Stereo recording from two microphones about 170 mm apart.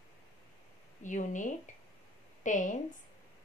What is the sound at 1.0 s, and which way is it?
A woman's voice, 45° left (ahead or behind).